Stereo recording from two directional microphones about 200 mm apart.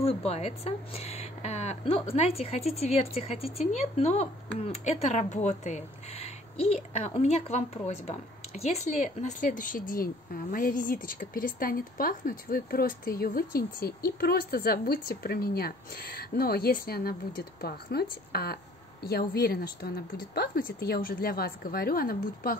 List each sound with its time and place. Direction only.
0.0 s a woman's voice: 30° left (ahead or behind); by 22.6 s 45° left (ahead or behind)